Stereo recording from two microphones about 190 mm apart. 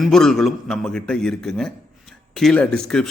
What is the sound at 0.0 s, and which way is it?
A man's voice, centre (ahead or behind).